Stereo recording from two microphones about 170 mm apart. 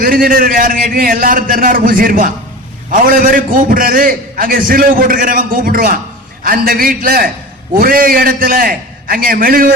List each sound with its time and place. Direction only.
0.0 s a man's voice: 55° right (ahead or behind)